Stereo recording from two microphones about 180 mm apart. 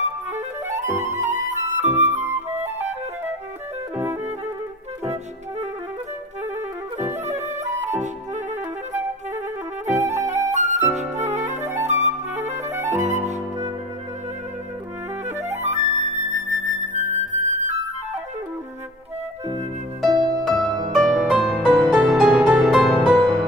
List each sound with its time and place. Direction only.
0.0 s clarinet: 40° right (ahead or behind)
1.2 s flute: 40° right (ahead or behind)
2.1 s flute: 15° right (ahead or behind)
3.9 s music: 15° right (ahead or behind)
7.0 s music: 40° right (ahead or behind)
10.3 s flute: 40° right (ahead or behind)
15.2 s music: 40° right (ahead or behind)
20.1 s music: 25° right (ahead or behind)
20.4 s music: centre (ahead or behind)